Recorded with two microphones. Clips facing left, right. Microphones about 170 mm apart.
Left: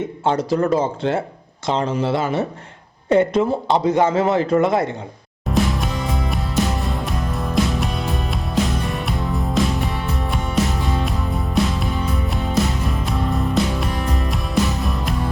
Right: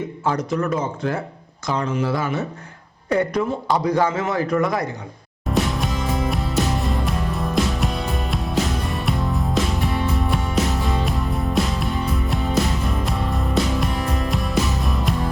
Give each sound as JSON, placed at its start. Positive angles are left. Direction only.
{"t": 0.3, "sound": "a man's voice", "side_deg": 30}
{"t": 5.5, "sound": "music", "side_deg": 0}